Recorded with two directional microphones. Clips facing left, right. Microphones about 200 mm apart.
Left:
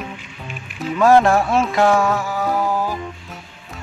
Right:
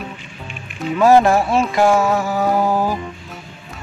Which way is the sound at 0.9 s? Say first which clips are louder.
Right 1 dB; 5° right (ahead or behind).